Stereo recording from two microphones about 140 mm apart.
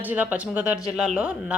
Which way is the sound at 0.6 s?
25° left (ahead or behind).